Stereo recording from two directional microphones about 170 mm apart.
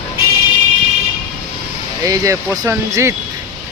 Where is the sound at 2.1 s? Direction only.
20° right (ahead or behind).